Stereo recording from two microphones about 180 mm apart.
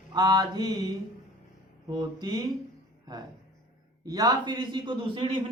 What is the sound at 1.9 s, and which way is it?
Speech, 20° right (ahead or behind).